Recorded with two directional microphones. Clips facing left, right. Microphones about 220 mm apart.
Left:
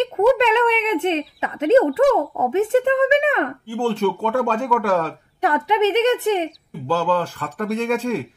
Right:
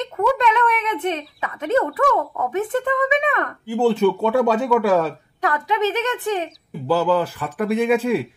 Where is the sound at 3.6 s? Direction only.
10° right (ahead or behind).